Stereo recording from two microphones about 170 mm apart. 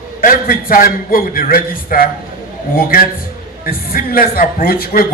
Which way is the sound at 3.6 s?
60° left (ahead or behind).